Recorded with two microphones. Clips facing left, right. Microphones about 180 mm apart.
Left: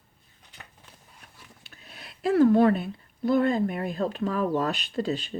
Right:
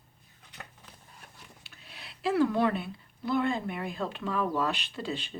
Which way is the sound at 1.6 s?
45° left (ahead or behind).